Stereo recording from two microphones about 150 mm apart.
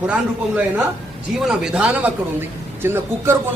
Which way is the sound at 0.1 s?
10° right (ahead or behind).